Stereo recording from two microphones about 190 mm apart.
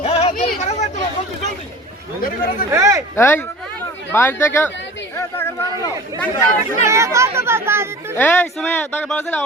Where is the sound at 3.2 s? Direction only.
10° left (ahead or behind).